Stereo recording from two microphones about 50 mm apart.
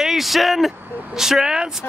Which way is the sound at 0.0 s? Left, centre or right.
Centre.